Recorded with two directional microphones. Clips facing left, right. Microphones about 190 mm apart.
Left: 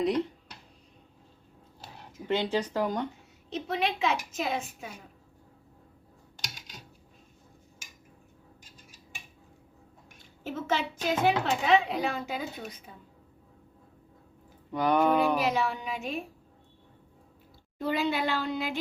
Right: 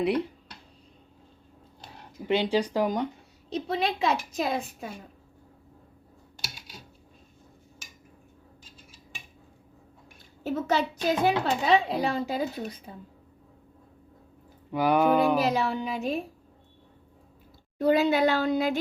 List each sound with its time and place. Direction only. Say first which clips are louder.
2.2 s speech: right 3 dB; 15° right (ahead or behind)
3.5 s speech: right 2 dB; 35° right (ahead or behind)
10.4 s speech: right 4 dB; 40° right (ahead or behind)
14.7 s a sound: right 2 dB; 5° right (ahead or behind)
15.4 s speech: right 3 dB; 35° right (ahead or behind)
17.7 s speech: right 7 dB; 40° right (ahead or behind)